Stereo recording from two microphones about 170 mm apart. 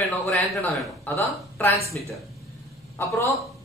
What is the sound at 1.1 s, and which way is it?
Speech, 15° left (ahead or behind).